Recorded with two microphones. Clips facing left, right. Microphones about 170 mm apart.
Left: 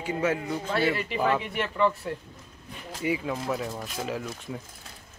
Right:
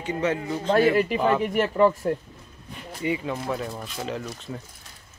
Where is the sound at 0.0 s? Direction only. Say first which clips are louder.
Right 1 dB; 5° left (ahead or behind).